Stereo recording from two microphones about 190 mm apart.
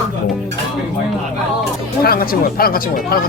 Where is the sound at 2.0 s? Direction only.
50° left (ahead or behind).